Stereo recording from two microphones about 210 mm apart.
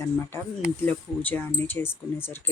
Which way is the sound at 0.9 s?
10° left (ahead or behind).